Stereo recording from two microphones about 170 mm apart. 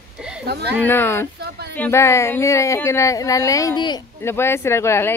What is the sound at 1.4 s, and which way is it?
Speech, 70° right (ahead or behind).